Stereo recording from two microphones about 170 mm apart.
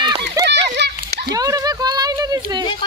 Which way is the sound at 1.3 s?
20° right (ahead or behind).